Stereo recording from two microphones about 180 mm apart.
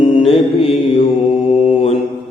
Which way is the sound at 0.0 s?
30° left (ahead or behind).